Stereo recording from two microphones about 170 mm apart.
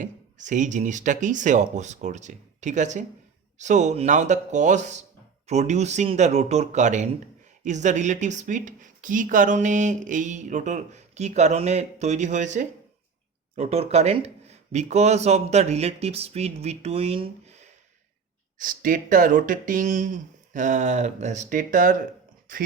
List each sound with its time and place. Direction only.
0.0 s speech: 45° right (ahead or behind)
18.6 s speech: 55° right (ahead or behind)